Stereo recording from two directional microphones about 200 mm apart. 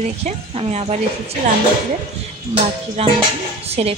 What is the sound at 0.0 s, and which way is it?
A woman's voice, 35° right (ahead or behind).